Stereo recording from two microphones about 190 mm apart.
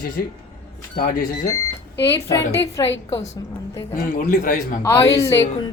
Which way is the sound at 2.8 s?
20° left (ahead or behind).